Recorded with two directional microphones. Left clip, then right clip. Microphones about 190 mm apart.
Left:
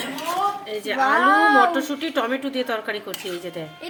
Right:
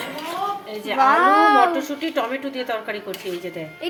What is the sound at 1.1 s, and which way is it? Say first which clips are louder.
Speech: right 1 dB; 15° right (ahead or behind).